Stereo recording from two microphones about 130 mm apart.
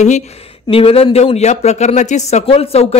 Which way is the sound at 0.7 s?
45° left (ahead or behind).